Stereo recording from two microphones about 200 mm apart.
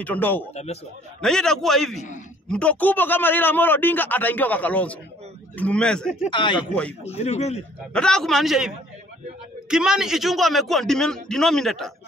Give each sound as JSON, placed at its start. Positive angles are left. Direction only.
{"t": 0.0, "sound": "a man's voice", "side_deg": 10}
{"t": 6.3, "sound": "a man's voice", "side_deg": 25}
{"t": 7.9, "sound": "a man's voice", "side_deg": 5}